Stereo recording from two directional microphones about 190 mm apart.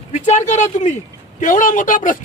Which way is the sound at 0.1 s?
35° left (ahead or behind).